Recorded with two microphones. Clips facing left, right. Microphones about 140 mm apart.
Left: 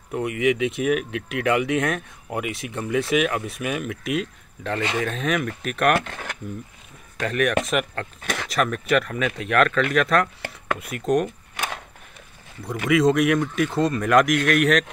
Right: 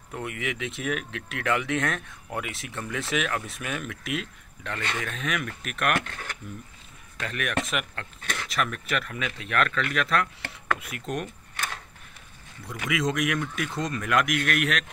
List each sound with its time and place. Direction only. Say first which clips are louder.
0.1 s speech: left 11 dB; 15° left (ahead or behind)
4.9 s speech: left 7 dB; 35° left (ahead or behind)
7.2 s speech: left 8 dB; 45° left (ahead or behind)
12.6 s speech: left 9 dB; 40° left (ahead or behind)